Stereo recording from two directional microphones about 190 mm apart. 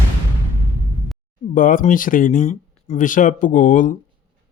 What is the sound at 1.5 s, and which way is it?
Speech, 45° left (ahead or behind).